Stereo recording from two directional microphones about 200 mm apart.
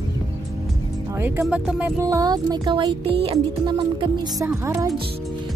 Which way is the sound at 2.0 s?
15° right (ahead or behind).